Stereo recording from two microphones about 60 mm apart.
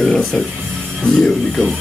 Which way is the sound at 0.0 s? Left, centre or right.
Centre.